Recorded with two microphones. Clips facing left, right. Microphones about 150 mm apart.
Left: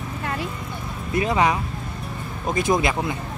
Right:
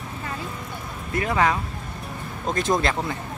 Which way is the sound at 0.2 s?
75° left (ahead or behind).